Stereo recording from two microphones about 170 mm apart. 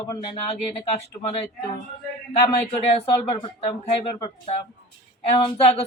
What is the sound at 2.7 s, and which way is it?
Speech, 35° left (ahead or behind).